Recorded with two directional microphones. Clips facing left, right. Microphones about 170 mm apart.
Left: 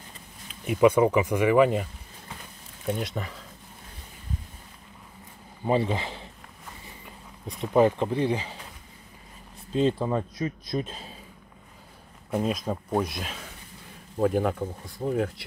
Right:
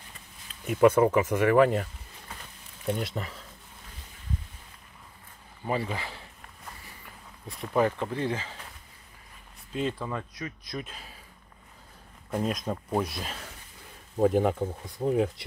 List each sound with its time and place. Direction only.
0.7 s speech: 5° left (ahead or behind)
1.4 s a sound: 5° left (ahead or behind)
3.0 s speech: centre (ahead or behind)
5.7 s speech: 25° left (ahead or behind)
9.7 s speech: 30° left (ahead or behind)
12.4 s speech: 5° left (ahead or behind)